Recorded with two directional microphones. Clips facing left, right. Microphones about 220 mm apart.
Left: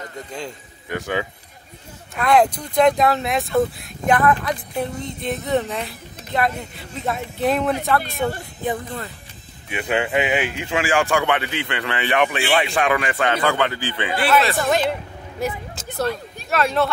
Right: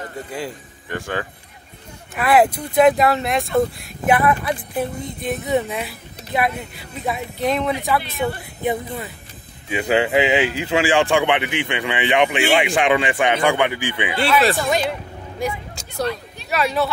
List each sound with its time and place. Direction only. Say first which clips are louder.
0.8 s speech: left 1 dB; 10° left (ahead or behind)
2.1 s speech: right 1 dB; 5° right (ahead or behind)
5.4 s speech: right 1 dB; 15° right (ahead or behind); by 7.7 s 5° left (ahead or behind)
8.6 s speech: right 2 dB; 10° right (ahead or behind)
9.8 s a man's voice: right 4 dB; 20° right (ahead or behind)
14.2 s speech: right 1 dB; centre (ahead or behind)
15.4 s vehicle: even; 5° left (ahead or behind)
16.4 s speech: left 1 dB; 5° right (ahead or behind)